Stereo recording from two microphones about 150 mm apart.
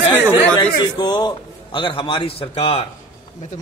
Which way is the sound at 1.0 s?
25° left (ahead or behind).